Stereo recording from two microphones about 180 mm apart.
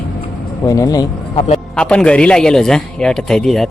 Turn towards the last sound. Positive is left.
turn(degrees=0)  # may be behind; listen again after turning